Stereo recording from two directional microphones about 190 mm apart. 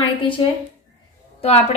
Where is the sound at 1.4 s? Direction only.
30° left (ahead or behind).